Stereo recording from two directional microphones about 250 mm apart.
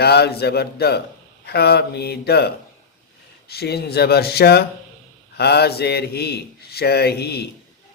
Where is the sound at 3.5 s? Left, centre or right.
Left.